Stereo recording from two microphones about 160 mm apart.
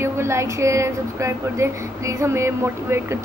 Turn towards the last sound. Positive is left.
turn(degrees=-15)  # may be behind; listen again after turning